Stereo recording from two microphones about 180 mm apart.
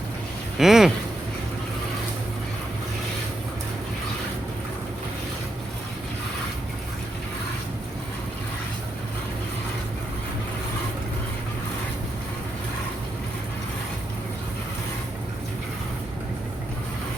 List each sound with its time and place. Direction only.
0.6 s speech: centre (ahead or behind)